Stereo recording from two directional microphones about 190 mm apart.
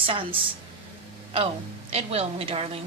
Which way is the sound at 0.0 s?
30° right (ahead or behind).